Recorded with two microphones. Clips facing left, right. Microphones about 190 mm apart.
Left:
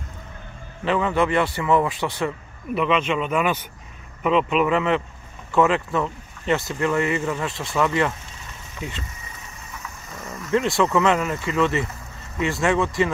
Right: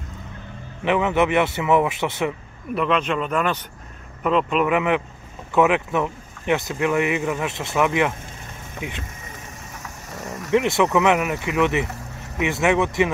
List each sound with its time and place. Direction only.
0.8 s a man's voice: 15° right (ahead or behind)
2.7 s speech: centre (ahead or behind)
4.6 s speech: 10° right (ahead or behind)
10.5 s speech: 15° right (ahead or behind)